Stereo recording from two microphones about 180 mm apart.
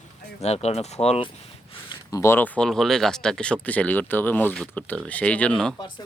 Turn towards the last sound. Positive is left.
turn(degrees=5)  # may be behind; listen again after turning